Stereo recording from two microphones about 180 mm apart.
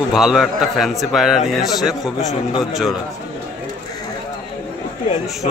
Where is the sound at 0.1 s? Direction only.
Centre (ahead or behind).